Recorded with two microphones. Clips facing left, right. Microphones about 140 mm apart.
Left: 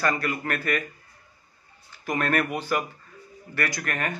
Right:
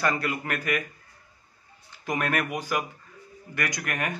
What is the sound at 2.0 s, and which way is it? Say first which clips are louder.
A man's voice: left 2 dB; 10° right (ahead or behind).